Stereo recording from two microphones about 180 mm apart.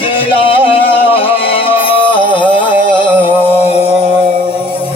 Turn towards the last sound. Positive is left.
turn(degrees=-30)  # may be behind; listen again after turning